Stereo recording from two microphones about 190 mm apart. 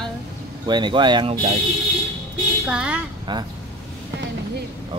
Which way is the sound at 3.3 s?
25° right (ahead or behind).